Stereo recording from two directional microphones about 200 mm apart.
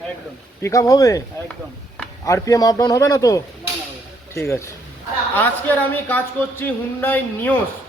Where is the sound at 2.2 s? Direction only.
15° left (ahead or behind).